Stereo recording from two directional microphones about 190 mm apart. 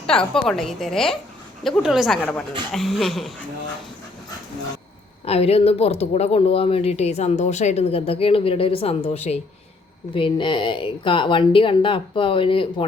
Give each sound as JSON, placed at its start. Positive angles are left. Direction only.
{"t": 0.1, "sound": "a woman's voice", "side_deg": 5}
{"t": 5.2, "sound": "speech", "side_deg": 30}